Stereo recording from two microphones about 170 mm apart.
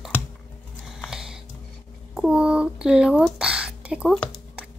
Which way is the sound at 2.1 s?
5° right (ahead or behind).